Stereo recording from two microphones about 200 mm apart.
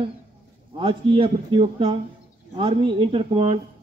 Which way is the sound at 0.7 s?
25° right (ahead or behind).